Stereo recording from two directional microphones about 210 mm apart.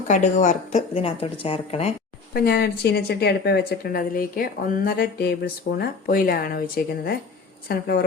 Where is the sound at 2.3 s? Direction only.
50° left (ahead or behind).